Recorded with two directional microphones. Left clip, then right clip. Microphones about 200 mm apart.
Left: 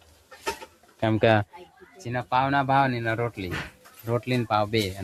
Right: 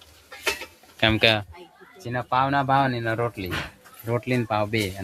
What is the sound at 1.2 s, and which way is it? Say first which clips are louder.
Speech: left 1 dB; 35° left (ahead or behind).